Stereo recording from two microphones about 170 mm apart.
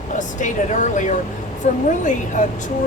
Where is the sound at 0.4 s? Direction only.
45° left (ahead or behind).